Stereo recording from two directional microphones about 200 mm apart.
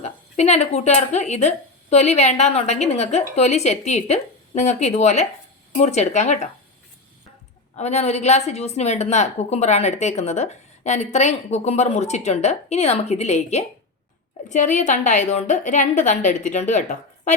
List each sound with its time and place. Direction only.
0.0 s a woman's voice: 35° left (ahead or behind)
7.8 s a woman's voice: 35° left (ahead or behind)